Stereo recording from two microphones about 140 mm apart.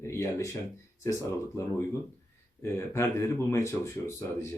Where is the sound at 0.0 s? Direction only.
20° left (ahead or behind).